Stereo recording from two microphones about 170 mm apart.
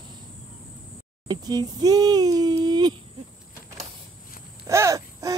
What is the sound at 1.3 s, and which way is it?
Speech, 25° right (ahead or behind).